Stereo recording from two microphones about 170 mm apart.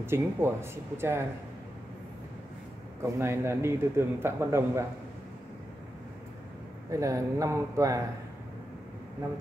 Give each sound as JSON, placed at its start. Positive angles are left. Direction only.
{"t": 0.0, "sound": "a man's voice", "side_deg": -15}
{"t": 3.0, "sound": "a man's voice", "side_deg": -15}
{"t": 6.9, "sound": "a man's voice", "side_deg": -20}